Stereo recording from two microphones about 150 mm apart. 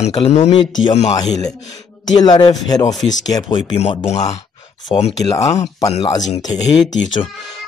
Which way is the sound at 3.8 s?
40° left (ahead or behind).